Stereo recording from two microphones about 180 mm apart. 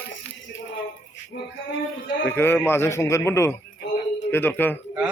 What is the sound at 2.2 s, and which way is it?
A man's voice, 10° left (ahead or behind).